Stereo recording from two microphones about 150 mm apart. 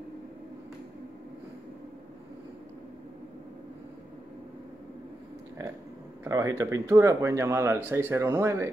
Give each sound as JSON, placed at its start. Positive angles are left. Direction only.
{"t": 6.2, "sound": "speech", "side_deg": -20}